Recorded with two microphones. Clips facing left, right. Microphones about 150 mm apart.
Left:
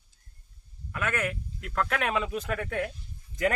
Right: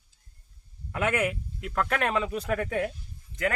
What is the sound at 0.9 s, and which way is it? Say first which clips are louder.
Speech: right 4 dB; 20° right (ahead or behind).